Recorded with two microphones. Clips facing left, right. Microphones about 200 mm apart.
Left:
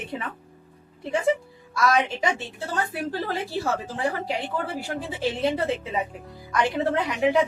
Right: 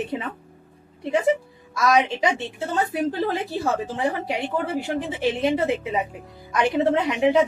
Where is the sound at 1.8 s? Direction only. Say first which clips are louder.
Right 3 dB; 20° right (ahead or behind).